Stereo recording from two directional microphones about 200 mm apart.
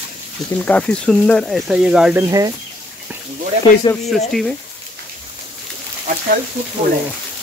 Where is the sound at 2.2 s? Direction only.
15° right (ahead or behind).